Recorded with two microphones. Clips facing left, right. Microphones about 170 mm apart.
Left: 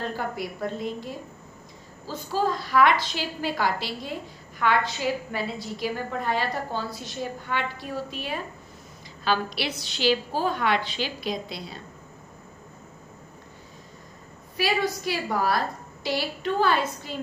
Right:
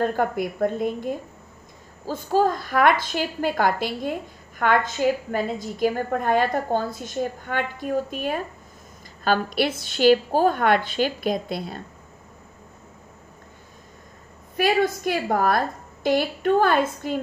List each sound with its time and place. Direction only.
0.0 s a woman's voice: 50° right (ahead or behind)
14.6 s a woman's voice: 50° right (ahead or behind)